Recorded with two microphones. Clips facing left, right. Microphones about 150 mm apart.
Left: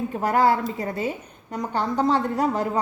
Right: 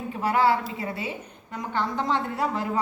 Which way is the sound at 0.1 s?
45° left (ahead or behind).